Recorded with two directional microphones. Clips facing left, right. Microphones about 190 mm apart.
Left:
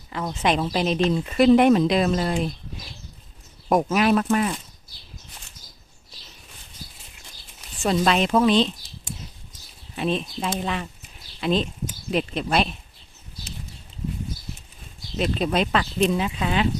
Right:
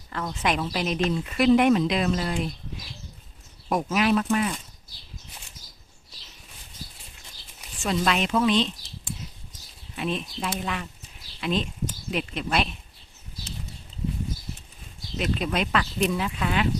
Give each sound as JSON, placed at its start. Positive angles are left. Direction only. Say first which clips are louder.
{"t": 0.1, "sound": "speech", "louder": "left 4 dB", "side_deg": 20}
{"t": 3.7, "sound": "speech", "louder": "left 4 dB", "side_deg": 50}
{"t": 7.8, "sound": "speech", "louder": "left 4 dB", "side_deg": 35}
{"t": 10.0, "sound": "speech", "louder": "left 4 dB", "side_deg": 30}
{"t": 15.2, "sound": "speech", "louder": "left 4 dB", "side_deg": 30}